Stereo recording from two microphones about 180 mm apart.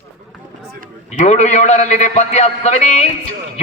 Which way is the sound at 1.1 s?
40° left (ahead or behind).